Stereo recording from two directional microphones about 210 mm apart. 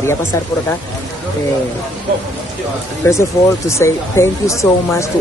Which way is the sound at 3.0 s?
15° left (ahead or behind).